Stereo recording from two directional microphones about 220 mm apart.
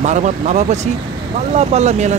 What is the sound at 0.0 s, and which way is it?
Speech, 30° right (ahead or behind).